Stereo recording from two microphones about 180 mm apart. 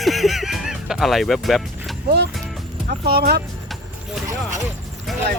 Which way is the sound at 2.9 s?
60° right (ahead or behind).